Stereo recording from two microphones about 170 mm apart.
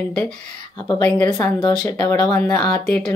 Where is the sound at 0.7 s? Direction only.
25° left (ahead or behind).